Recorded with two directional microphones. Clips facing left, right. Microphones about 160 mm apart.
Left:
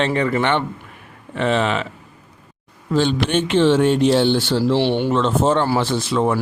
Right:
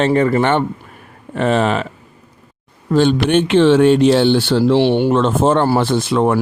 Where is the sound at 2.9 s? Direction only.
55° right (ahead or behind).